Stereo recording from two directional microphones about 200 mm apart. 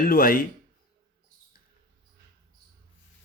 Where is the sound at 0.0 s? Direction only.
45° left (ahead or behind).